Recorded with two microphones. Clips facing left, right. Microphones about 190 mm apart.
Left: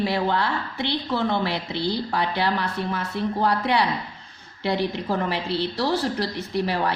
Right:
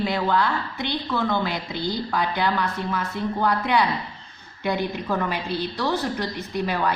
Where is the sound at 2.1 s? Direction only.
30° left (ahead or behind).